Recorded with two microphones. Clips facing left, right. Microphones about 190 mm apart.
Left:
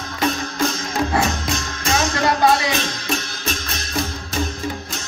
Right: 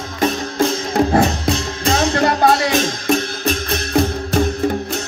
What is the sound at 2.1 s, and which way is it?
Music, 55° right (ahead or behind).